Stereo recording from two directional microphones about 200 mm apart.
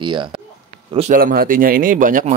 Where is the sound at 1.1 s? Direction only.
45° right (ahead or behind).